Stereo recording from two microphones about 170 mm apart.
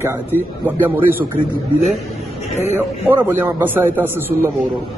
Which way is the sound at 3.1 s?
10° right (ahead or behind).